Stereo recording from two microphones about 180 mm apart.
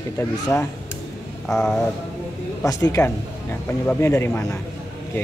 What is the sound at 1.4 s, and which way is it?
A man's voice, 10° left (ahead or behind).